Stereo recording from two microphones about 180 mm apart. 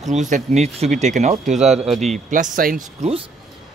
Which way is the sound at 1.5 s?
Centre (ahead or behind).